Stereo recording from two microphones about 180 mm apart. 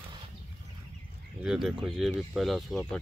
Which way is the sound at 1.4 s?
5° right (ahead or behind).